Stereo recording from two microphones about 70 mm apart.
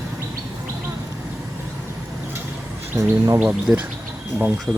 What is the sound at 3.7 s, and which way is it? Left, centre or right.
Speech, centre.